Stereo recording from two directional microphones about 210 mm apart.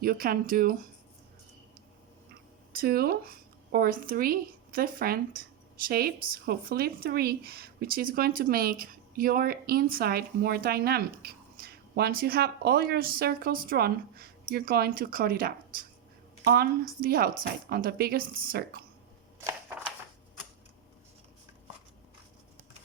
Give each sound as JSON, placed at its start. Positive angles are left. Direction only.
{"t": 0.0, "sound": "a woman's voice", "side_deg": -45}
{"t": 2.3, "sound": "a woman's voice", "side_deg": -45}